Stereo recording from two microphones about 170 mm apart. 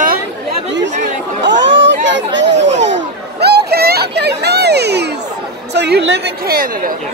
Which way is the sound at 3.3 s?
75° right (ahead or behind).